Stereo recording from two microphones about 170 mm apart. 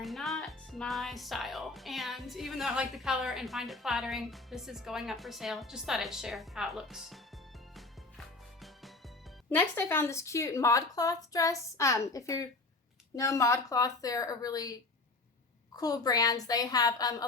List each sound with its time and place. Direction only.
0.0 s speech: centre (ahead or behind)
9.5 s a woman's voice: 15° left (ahead or behind)